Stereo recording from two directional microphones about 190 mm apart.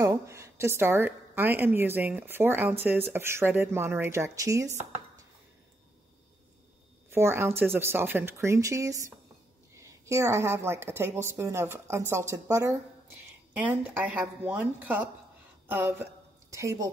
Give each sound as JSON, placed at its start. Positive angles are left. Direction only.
{"t": 0.0, "sound": "a woman's voice", "side_deg": -15}
{"t": 7.1, "sound": "a woman's voice", "side_deg": -15}